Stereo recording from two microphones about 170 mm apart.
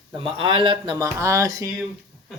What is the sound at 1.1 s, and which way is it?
Speech, 15° right (ahead or behind).